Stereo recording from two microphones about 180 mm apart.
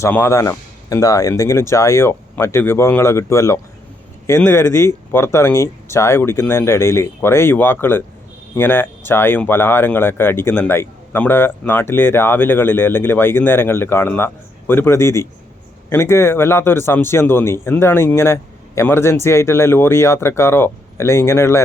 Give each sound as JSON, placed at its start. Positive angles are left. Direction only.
{"t": 0.0, "sound": "speech", "side_deg": 15}